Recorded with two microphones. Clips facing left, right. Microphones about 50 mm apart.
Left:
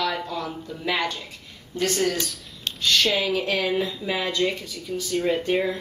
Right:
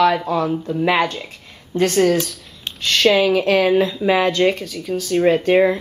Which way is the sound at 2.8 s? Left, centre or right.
Right.